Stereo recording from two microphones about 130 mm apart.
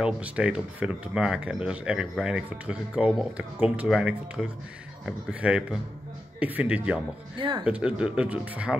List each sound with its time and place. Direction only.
0.0 s speech: 10° right (ahead or behind)
7.3 s speech: 40° right (ahead or behind)
7.6 s speech: 10° right (ahead or behind)